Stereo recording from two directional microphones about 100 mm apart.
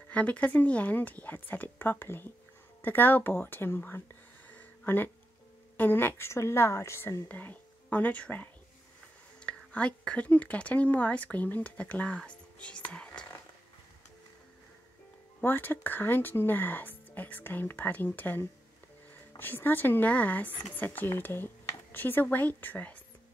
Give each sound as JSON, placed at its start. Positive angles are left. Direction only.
{"t": 0.1, "sound": "speech", "side_deg": 15}
{"t": 4.5, "sound": "a sound", "side_deg": 20}
{"t": 5.8, "sound": "speech", "side_deg": 20}
{"t": 9.5, "sound": "speech", "side_deg": 10}
{"t": 15.4, "sound": "speech", "side_deg": 20}